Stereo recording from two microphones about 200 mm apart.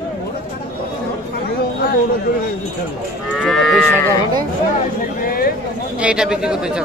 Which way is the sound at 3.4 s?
Centre (ahead or behind).